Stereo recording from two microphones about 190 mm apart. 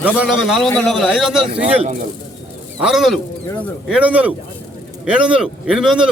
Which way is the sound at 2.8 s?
Centre (ahead or behind).